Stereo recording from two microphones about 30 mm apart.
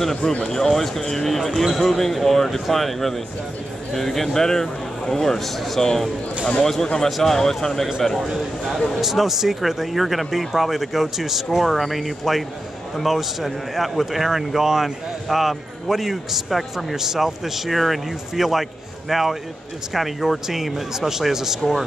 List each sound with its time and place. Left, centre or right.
0.2 s speech: left
0.5 s a man's voice: centre
7.1 s a man's voice: centre
7.3 s a man's voice: centre
9.0 s a man's voice: centre
14.3 s speech: centre
15.2 s a man's voice: centre
16.7 s speech: centre
17.6 s a man's voice: centre